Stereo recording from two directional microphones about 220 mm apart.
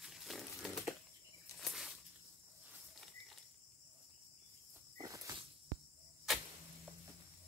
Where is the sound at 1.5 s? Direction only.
Centre (ahead or behind).